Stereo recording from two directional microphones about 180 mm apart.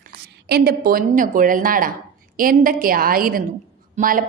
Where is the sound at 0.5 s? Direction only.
60° right (ahead or behind).